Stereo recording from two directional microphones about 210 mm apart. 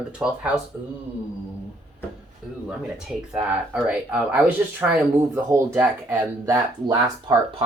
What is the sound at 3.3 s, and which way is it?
Speech, 5° right (ahead or behind).